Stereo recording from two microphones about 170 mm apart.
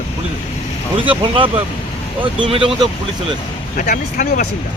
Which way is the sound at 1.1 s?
30° right (ahead or behind).